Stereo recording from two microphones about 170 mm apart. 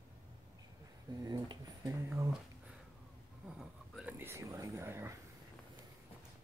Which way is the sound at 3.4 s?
5° right (ahead or behind).